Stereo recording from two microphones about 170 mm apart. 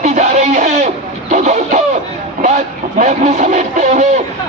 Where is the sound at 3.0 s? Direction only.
45° right (ahead or behind).